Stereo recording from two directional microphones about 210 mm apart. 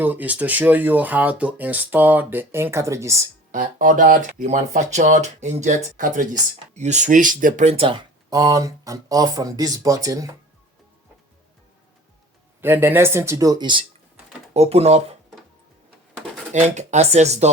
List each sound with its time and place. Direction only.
0.0 s speech: 10° right (ahead or behind)
3.5 s speech: 40° right (ahead or behind); by 10.3 s 15° right (ahead or behind)
12.6 s speech: 10° right (ahead or behind); by 15.0 s 30° right (ahead or behind)
16.5 s speech: 30° right (ahead or behind)